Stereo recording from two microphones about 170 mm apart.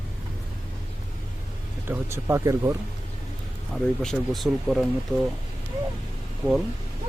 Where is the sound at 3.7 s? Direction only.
Centre (ahead or behind).